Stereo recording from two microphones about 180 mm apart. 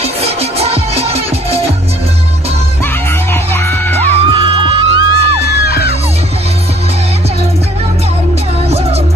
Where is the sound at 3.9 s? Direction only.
30° right (ahead or behind).